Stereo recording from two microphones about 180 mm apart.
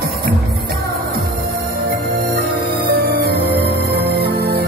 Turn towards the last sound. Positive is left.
turn(degrees=-60)  # may be behind; listen again after turning